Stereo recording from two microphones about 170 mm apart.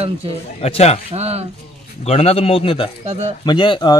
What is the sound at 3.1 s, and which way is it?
Speech, 40° right (ahead or behind).